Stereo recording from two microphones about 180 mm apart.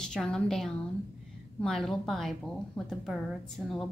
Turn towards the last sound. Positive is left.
turn(degrees=0)  # may be behind; listen again after turning